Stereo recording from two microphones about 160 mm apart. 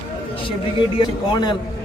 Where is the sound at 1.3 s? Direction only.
25° left (ahead or behind).